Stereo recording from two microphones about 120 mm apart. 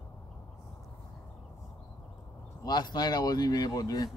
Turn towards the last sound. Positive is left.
turn(degrees=30)  # may be behind; listen again after turning